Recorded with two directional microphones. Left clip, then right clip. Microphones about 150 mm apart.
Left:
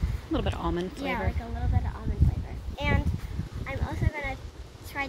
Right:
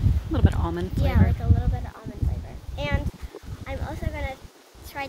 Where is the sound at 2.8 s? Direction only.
15° right (ahead or behind).